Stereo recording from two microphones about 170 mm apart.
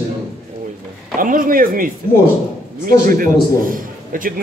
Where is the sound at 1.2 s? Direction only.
55° right (ahead or behind).